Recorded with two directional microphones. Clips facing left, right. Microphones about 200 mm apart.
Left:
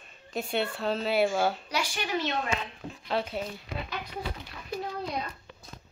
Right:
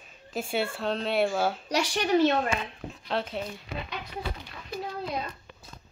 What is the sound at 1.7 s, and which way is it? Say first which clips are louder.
Speech: right 6 dB; 35° right (ahead or behind).